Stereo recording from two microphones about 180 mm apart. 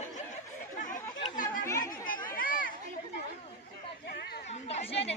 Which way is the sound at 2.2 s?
50° left (ahead or behind).